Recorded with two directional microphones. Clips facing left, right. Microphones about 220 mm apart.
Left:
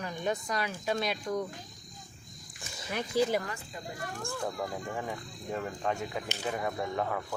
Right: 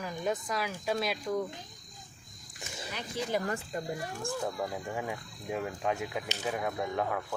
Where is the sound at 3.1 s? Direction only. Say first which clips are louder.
Left 9 dB; 40° left (ahead or behind).